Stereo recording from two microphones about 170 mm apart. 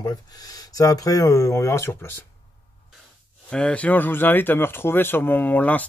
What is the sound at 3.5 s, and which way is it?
Speech, 5° left (ahead or behind).